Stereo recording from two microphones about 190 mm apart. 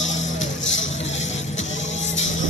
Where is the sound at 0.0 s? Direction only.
85° left.